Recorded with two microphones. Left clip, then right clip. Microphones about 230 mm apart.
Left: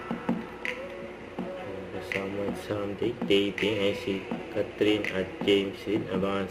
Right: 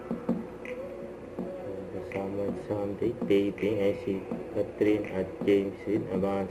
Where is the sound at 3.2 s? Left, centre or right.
Centre.